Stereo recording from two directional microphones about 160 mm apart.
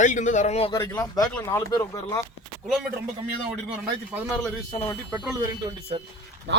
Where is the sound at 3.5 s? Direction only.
10° right (ahead or behind).